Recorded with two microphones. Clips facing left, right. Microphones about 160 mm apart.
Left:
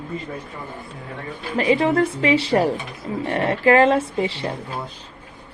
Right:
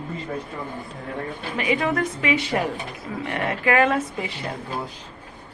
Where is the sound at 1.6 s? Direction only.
35° left (ahead or behind).